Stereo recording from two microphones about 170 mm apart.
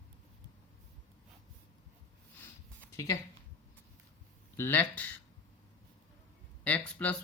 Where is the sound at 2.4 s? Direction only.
15° left (ahead or behind).